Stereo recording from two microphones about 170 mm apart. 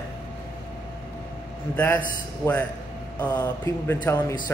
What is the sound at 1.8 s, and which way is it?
Speech, 10° left (ahead or behind).